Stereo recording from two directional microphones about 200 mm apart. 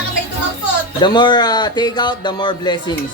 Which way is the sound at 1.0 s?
20° left (ahead or behind).